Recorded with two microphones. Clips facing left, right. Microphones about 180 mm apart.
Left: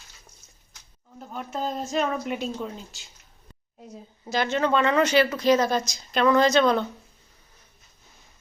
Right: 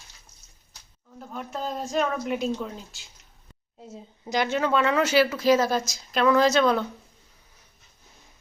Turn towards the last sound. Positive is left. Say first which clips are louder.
# left 1 dB
turn(degrees=-5)  # may be behind; listen again after turning